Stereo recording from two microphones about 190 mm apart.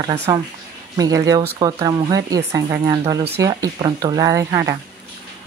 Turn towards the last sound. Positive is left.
turn(degrees=-15)  # may be behind; listen again after turning